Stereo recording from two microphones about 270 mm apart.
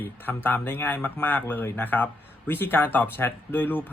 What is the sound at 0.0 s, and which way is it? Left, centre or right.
Speech, centre.